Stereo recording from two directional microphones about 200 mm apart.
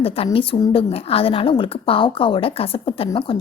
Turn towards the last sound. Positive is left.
turn(degrees=25)  # may be behind; listen again after turning